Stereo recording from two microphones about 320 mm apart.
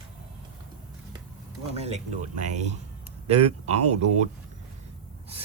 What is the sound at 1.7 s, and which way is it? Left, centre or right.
Speech, centre.